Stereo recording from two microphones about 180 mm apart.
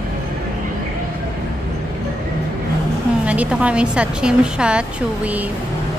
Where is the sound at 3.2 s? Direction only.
5° right (ahead or behind).